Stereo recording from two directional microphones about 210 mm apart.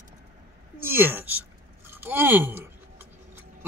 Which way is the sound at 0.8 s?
10° right (ahead or behind).